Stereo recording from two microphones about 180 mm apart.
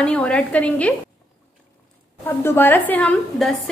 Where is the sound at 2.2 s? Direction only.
10° left (ahead or behind).